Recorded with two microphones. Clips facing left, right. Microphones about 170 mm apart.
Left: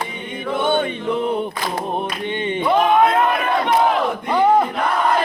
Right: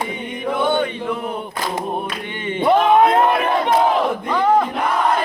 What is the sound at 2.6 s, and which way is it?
Music, 30° right (ahead or behind).